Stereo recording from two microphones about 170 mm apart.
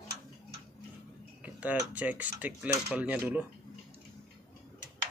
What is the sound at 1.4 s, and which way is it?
Speech, 10° right (ahead or behind).